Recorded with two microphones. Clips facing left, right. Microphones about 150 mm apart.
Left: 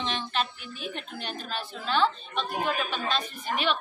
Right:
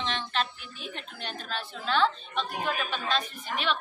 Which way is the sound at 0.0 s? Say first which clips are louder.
Left 1 dB; 5° left (ahead or behind).